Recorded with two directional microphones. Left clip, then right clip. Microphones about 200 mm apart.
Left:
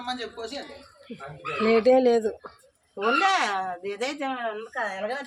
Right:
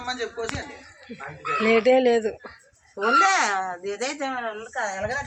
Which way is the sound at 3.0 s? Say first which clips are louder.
Right 4 dB; 25° left (ahead or behind).